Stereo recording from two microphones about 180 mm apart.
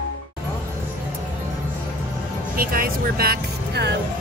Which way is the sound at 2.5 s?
55° right (ahead or behind).